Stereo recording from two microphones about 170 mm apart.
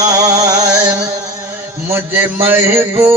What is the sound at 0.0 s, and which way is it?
Music, 25° right (ahead or behind).